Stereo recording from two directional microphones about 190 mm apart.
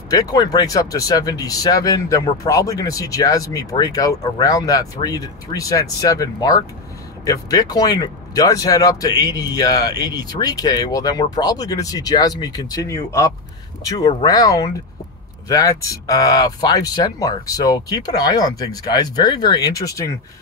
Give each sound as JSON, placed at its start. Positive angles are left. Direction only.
{"t": 0.1, "sound": "speech", "side_deg": 20}